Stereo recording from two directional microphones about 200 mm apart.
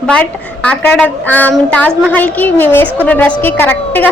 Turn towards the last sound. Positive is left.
turn(degrees=10)  # may be behind; listen again after turning